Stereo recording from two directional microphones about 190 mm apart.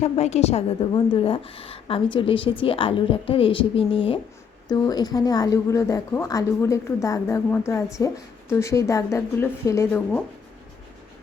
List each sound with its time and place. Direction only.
0.0 s a woman's voice: 35° left (ahead or behind); by 10.2 s 10° left (ahead or behind)